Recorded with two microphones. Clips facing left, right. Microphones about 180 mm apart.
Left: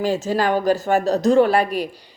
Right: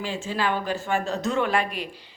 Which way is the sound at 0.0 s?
40° left (ahead or behind).